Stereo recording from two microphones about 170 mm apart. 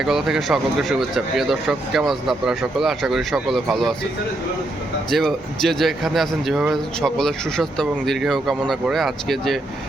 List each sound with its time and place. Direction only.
0.0 s speech: centre (ahead or behind)
5.1 s speech: centre (ahead or behind)